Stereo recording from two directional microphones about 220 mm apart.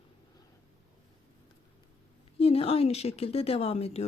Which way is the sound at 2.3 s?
25° left (ahead or behind).